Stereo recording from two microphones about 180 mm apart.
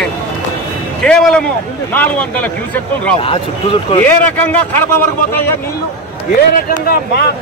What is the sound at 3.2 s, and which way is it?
Speech, 30° left (ahead or behind).